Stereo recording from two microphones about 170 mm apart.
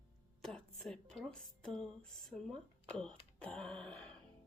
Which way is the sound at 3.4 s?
5° left (ahead or behind).